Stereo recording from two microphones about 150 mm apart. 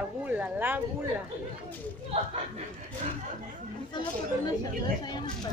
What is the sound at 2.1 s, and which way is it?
Speech, 40° right (ahead or behind).